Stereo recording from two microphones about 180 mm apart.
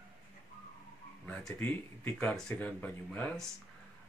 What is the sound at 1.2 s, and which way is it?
Speech, 5° left (ahead or behind).